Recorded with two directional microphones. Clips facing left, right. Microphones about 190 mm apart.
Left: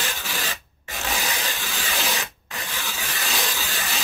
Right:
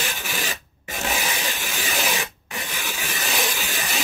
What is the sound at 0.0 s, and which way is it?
Rub, 15° right (ahead or behind).